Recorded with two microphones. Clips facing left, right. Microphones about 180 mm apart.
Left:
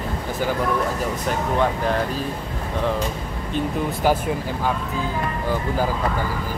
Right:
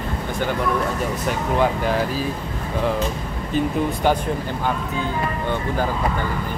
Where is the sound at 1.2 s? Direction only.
Centre (ahead or behind).